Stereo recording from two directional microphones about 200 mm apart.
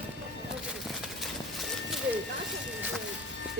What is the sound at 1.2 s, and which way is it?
Clip-clop, centre (ahead or behind).